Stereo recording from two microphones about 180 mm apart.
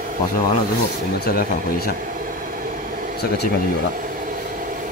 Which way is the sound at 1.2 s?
55° left (ahead or behind).